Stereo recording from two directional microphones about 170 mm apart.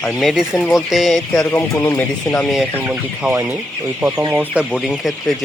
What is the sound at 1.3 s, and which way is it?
Speech, 15° left (ahead or behind).